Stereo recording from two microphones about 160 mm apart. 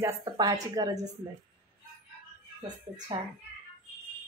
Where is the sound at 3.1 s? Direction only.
25° right (ahead or behind).